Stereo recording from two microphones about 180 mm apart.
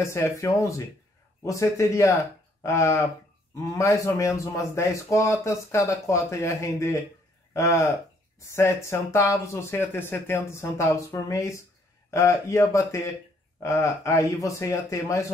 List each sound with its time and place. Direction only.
0.0 s a man's voice: 15° left (ahead or behind)